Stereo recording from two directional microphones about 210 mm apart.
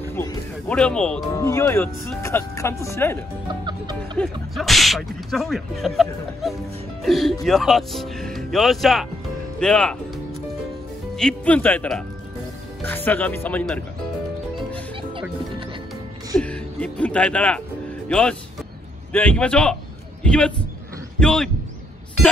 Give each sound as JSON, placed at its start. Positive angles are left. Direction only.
{"t": 0.1, "sound": "speech", "side_deg": 10}
{"t": 3.6, "sound": "music", "side_deg": -20}
{"t": 4.2, "sound": "speech", "side_deg": 0}
{"t": 16.3, "sound": "a sound", "side_deg": 5}
{"t": 18.0, "sound": "a man's voice", "side_deg": 5}